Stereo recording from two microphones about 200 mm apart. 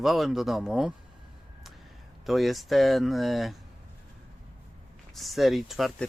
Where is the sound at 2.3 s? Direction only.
Centre (ahead or behind).